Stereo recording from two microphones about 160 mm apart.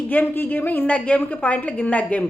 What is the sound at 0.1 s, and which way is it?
Speech, 10° left (ahead or behind).